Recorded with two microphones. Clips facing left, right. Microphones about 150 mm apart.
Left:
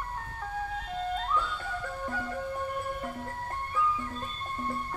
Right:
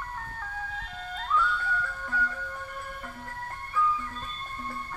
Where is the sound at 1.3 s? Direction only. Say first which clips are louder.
Right 4 dB; 25° left (ahead or behind).